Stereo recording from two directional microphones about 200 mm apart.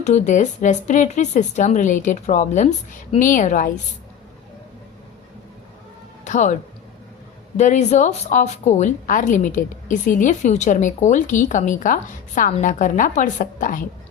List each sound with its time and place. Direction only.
0.0 s a woman's voice: 35° left (ahead or behind)
6.2 s a woman's voice: 35° left (ahead or behind)